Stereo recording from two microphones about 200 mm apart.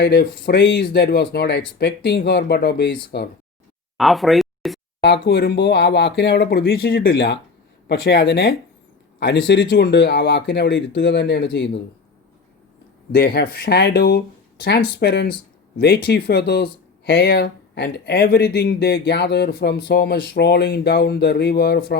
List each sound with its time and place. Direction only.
0.0 s speech: 55° left (ahead or behind)
3.9 s a sound: centre (ahead or behind)
4.9 s speech: 55° left (ahead or behind)
13.1 s speech: 55° left (ahead or behind)